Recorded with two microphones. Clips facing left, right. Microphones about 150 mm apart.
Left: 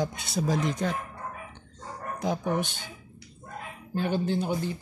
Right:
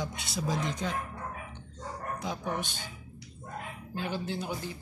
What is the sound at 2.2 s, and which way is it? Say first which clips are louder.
Speech: left 8 dB; 55° left (ahead or behind).